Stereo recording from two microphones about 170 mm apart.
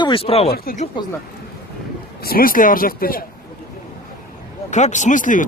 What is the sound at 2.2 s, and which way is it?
Speech, 60° left (ahead or behind).